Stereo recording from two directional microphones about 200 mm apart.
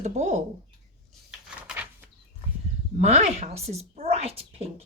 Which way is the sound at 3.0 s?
35° right (ahead or behind).